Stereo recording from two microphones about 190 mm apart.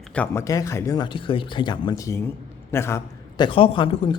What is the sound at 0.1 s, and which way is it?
Speech, 10° left (ahead or behind).